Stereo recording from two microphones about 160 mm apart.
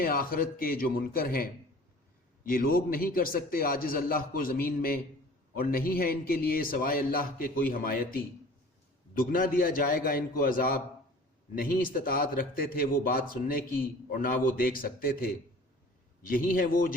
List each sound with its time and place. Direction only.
0.0 s speech: 65° left (ahead or behind)